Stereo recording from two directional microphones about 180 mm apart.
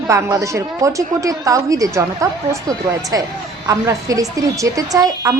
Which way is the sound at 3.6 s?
20° right (ahead or behind).